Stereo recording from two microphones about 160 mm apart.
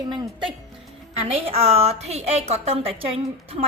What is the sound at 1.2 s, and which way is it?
A woman's voice, 40° right (ahead or behind).